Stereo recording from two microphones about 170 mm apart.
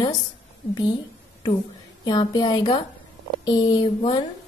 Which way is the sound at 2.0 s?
25° left (ahead or behind).